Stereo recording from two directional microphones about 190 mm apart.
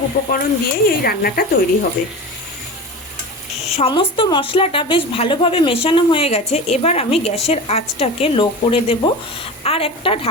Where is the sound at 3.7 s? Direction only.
30° left (ahead or behind).